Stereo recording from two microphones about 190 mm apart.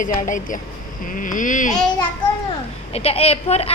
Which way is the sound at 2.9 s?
30° left (ahead or behind).